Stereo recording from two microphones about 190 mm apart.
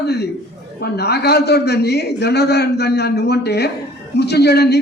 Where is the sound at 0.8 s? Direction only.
60° left (ahead or behind).